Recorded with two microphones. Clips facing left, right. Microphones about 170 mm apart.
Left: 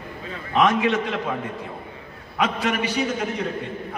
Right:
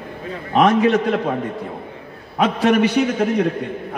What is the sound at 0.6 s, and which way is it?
Speech, 40° right (ahead or behind).